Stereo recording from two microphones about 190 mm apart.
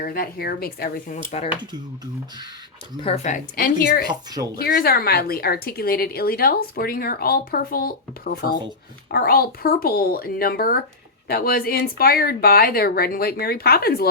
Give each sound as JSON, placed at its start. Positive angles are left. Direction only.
{"t": 0.0, "sound": "a woman's voice", "side_deg": 50}
{"t": 3.0, "sound": "speech", "side_deg": 30}
{"t": 3.3, "sound": "a woman's voice", "side_deg": 50}
{"t": 4.1, "sound": "speech", "side_deg": -20}
{"t": 4.5, "sound": "a woman's voice", "side_deg": 50}